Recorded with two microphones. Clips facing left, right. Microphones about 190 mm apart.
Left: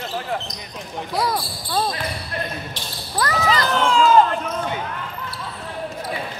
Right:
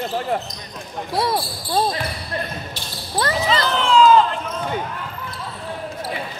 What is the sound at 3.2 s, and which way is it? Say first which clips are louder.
Basketball bounce: even; 30° right (ahead or behind).